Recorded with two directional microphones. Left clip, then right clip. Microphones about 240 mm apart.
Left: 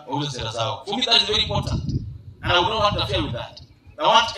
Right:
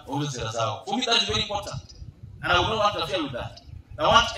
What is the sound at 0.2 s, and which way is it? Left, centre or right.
A man's voice, left.